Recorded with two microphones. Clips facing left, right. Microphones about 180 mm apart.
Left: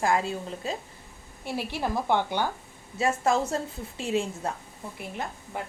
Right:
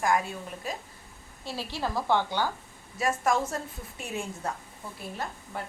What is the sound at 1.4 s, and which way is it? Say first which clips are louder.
A woman's voice: left 3 dB; 15° left (ahead or behind).